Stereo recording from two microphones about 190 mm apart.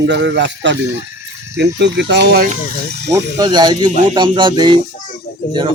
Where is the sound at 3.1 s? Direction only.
20° right (ahead or behind).